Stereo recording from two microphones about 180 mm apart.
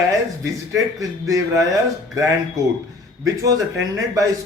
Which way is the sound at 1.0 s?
20° right (ahead or behind).